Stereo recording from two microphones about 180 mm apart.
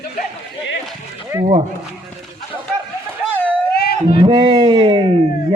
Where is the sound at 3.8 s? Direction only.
60° left (ahead or behind).